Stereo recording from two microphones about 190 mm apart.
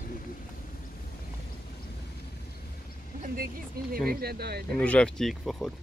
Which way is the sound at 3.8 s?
55° right (ahead or behind).